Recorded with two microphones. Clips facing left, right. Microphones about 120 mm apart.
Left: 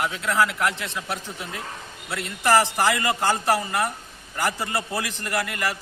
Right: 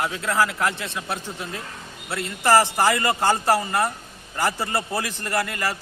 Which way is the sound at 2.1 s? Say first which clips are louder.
Right 2 dB; 30° right (ahead or behind).